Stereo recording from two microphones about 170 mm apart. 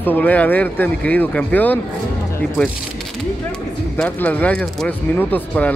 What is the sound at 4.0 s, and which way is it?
Speech, 10° left (ahead or behind).